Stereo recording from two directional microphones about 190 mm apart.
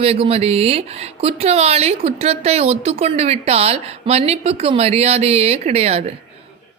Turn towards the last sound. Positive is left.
turn(degrees=-30)  # may be behind; listen again after turning